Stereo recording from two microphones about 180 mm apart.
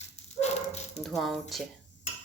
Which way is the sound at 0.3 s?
40° left (ahead or behind).